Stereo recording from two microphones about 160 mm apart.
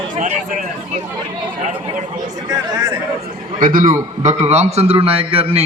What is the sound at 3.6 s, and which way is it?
A man's voice, 60° right (ahead or behind).